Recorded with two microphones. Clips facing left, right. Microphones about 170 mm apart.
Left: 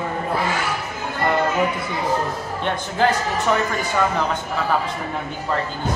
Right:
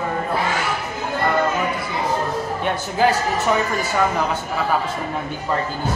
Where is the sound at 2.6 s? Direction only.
10° right (ahead or behind).